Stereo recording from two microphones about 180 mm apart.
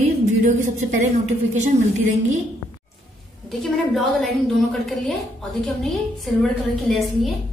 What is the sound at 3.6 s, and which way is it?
A woman's voice, centre (ahead or behind).